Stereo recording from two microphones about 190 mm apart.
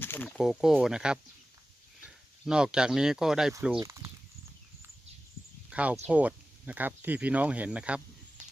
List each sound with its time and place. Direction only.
0.0 s speech: 10° left (ahead or behind)
3.8 s speech: 15° right (ahead or behind)
5.7 s speech: 5° right (ahead or behind)